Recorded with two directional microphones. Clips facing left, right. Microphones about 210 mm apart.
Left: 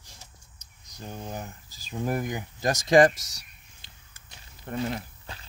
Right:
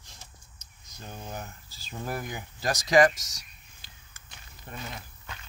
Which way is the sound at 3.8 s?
20° left (ahead or behind).